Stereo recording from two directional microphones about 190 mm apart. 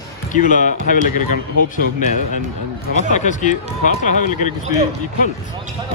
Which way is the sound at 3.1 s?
40° left (ahead or behind).